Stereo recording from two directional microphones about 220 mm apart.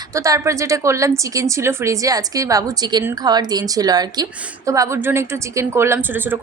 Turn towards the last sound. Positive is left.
turn(degrees=-10)  # may be behind; listen again after turning